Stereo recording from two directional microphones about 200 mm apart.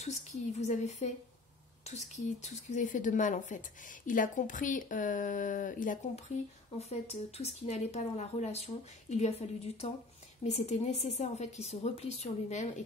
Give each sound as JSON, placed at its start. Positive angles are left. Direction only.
{"t": 0.0, "sound": "speech", "side_deg": 35}